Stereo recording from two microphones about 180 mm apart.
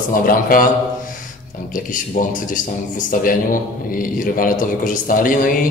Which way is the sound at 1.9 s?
45° left (ahead or behind).